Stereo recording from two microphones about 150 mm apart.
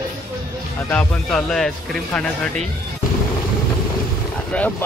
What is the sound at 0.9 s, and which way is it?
A man's voice, 5° left (ahead or behind).